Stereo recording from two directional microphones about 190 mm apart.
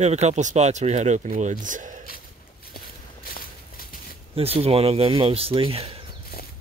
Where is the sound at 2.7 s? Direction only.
50° left (ahead or behind).